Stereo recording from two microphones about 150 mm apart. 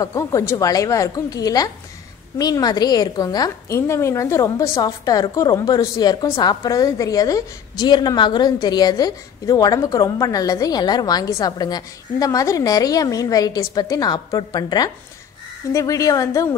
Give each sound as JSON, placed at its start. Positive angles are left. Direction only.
{"t": 0.0, "sound": "a woman's voice", "side_deg": 20}